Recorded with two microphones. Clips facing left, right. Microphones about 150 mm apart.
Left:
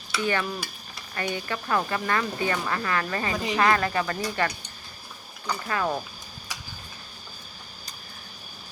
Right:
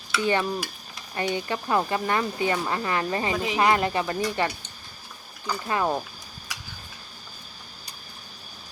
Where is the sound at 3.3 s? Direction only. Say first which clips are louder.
Right 1 dB; centre (ahead or behind).